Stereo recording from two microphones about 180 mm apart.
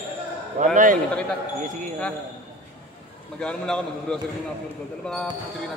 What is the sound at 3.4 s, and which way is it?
Speech, 5° left (ahead or behind).